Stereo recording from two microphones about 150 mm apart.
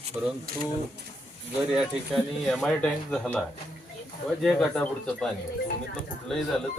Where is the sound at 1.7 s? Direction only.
Centre (ahead or behind).